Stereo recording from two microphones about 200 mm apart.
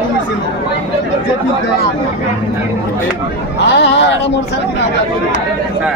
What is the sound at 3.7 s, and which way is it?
Speech, 60° left (ahead or behind).